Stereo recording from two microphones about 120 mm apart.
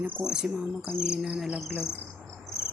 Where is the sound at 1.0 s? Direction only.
5° right (ahead or behind).